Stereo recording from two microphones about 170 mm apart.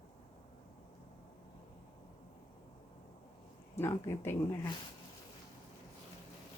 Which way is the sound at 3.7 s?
15° left (ahead or behind).